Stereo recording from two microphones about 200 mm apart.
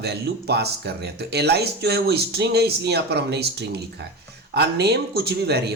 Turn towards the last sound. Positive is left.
turn(degrees=-55)  # may be behind; listen again after turning